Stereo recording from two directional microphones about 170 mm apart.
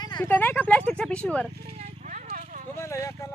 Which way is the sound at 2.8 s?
15° left (ahead or behind).